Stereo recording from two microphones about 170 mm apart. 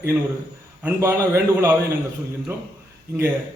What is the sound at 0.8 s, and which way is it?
Speech, 15° right (ahead or behind).